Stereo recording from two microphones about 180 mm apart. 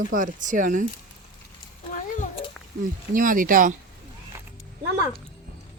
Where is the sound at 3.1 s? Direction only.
50° right (ahead or behind).